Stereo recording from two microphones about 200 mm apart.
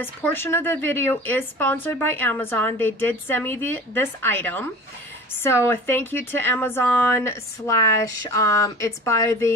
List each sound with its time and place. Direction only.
0.0 s speech: 10° left (ahead or behind)